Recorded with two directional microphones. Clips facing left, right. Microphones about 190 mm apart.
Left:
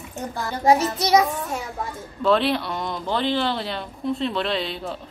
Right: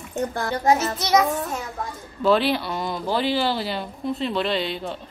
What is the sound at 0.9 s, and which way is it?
Child singing, 10° left (ahead or behind).